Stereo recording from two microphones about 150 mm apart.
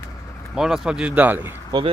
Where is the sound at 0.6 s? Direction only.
5° right (ahead or behind).